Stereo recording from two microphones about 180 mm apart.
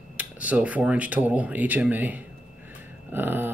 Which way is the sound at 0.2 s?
10° right (ahead or behind).